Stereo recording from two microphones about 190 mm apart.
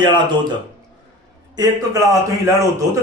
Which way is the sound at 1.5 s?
20° right (ahead or behind).